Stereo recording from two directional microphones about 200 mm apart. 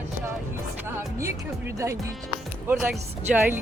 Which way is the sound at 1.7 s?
15° right (ahead or behind).